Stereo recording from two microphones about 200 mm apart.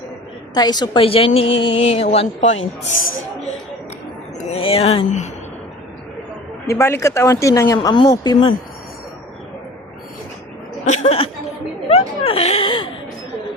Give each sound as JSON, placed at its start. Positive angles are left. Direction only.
{"t": 0.5, "sound": "a woman's voice", "side_deg": 20}
{"t": 4.5, "sound": "a woman's voice", "side_deg": 30}
{"t": 6.7, "sound": "speech", "side_deg": 15}
{"t": 10.8, "sound": "speech", "side_deg": 35}
{"t": 11.9, "sound": "a sound", "side_deg": 30}